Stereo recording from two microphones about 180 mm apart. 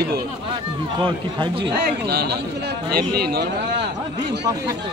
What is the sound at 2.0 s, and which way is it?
Speech, 65° right (ahead or behind).